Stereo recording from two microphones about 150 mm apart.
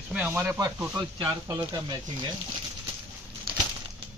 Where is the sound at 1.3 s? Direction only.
25° right (ahead or behind).